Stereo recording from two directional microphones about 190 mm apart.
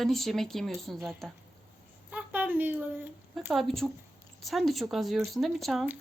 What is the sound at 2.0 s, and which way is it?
A woman's voice, 10° right (ahead or behind).